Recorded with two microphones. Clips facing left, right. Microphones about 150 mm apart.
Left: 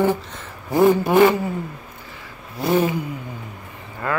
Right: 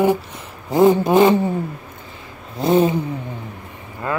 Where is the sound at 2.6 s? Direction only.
25° right (ahead or behind).